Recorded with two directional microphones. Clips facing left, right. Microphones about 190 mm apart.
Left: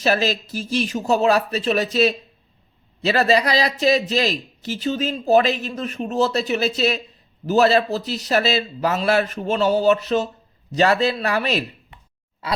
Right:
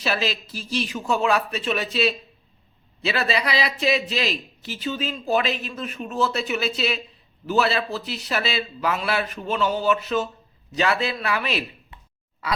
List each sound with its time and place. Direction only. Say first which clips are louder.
0.0 s a man's voice: left 6 dB; 45° left (ahead or behind)